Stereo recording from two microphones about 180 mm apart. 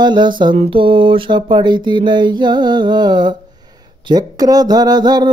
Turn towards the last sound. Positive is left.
turn(degrees=-25)  # may be behind; listen again after turning